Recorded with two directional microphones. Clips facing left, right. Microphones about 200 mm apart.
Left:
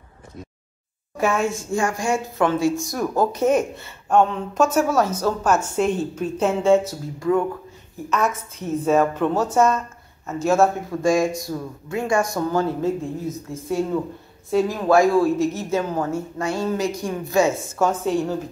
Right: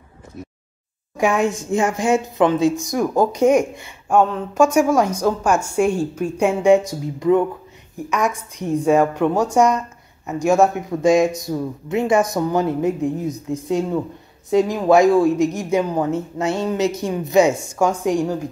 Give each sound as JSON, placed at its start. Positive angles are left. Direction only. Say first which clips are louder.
{"t": 1.1, "sound": "a woman's voice", "louder": "right 3 dB", "side_deg": -15}